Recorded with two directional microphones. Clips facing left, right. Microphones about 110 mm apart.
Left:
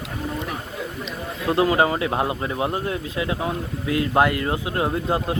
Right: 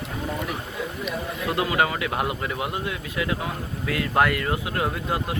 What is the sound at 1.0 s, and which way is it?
Speech, 30° left (ahead or behind).